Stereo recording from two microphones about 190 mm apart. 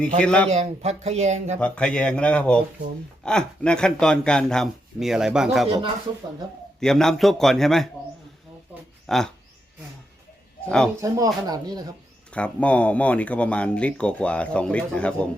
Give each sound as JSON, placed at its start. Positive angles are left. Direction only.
{"t": 0.2, "sound": "speech", "side_deg": 5}
{"t": 0.5, "sound": "speech", "side_deg": -35}
{"t": 1.5, "sound": "speech", "side_deg": 5}
{"t": 6.7, "sound": "speech", "side_deg": 5}
{"t": 9.0, "sound": "speech", "side_deg": 0}
{"t": 11.0, "sound": "speech", "side_deg": -20}
{"t": 12.3, "sound": "speech", "side_deg": 5}